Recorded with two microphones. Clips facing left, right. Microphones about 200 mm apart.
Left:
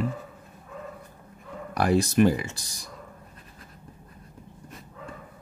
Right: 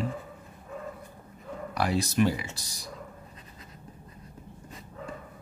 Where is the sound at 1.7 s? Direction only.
50° left (ahead or behind).